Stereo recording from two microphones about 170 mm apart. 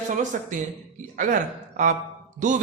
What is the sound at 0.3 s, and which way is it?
A man's voice, 55° right (ahead or behind).